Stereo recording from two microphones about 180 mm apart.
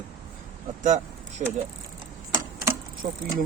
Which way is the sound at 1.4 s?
30° right (ahead or behind).